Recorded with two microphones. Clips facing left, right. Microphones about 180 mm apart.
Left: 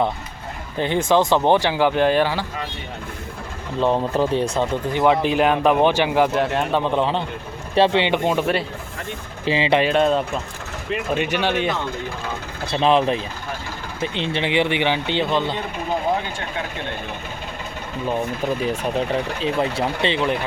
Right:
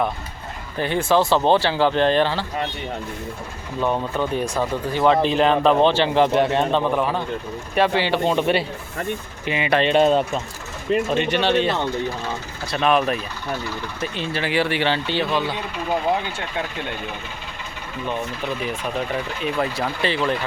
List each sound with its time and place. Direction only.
0.8 s speech: 20° left (ahead or behind)
3.8 s speech: 30° left (ahead or behind); by 6.8 s 10° left (ahead or behind)
6.9 s speech: 25° left (ahead or behind); by 8.6 s 5° left (ahead or behind)
9.4 s speech: 30° left (ahead or behind)
9.8 s speech: centre (ahead or behind)
11.1 s speech: 10° left (ahead or behind)
12.6 s speech: 25° left (ahead or behind)
19.4 s speech: 25° left (ahead or behind)